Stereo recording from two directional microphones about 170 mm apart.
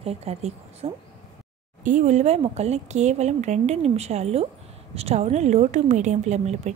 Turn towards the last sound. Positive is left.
turn(degrees=-40)  # may be behind; listen again after turning